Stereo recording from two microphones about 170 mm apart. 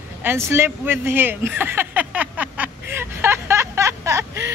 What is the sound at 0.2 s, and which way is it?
Speech, 15° right (ahead or behind).